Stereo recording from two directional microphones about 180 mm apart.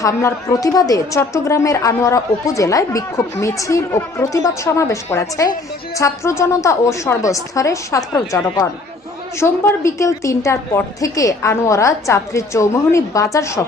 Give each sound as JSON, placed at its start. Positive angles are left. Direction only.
{"t": 0.0, "sound": "a woman's voice", "side_deg": 15}